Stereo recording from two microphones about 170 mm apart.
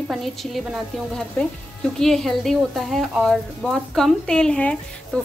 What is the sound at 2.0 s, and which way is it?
A woman's voice, centre (ahead or behind).